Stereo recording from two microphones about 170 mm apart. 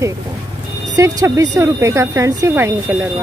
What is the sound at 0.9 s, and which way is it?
Speech, 20° right (ahead or behind).